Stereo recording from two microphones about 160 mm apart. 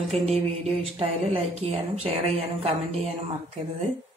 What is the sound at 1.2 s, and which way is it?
A woman's voice, 40° right (ahead or behind).